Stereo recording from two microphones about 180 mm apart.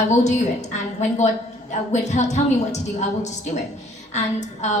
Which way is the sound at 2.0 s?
40° left (ahead or behind).